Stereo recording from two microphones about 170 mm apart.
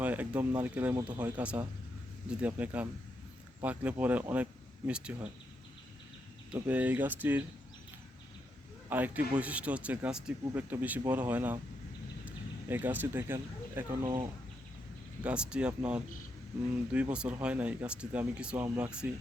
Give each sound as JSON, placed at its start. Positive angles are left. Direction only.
{"t": 0.0, "sound": "speech", "side_deg": -10}
{"t": 6.5, "sound": "speech", "side_deg": -10}
{"t": 8.9, "sound": "speech", "side_deg": -10}
{"t": 12.2, "sound": "a sound", "side_deg": -10}
{"t": 14.0, "sound": "speech", "side_deg": -25}
{"t": 15.2, "sound": "speech", "side_deg": -5}